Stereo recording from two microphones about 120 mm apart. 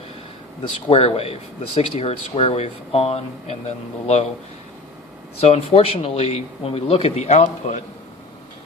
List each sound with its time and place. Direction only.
0.9 s speech: 55° left (ahead or behind)
5.4 s speech: 60° left (ahead or behind); by 7.8 s 90° left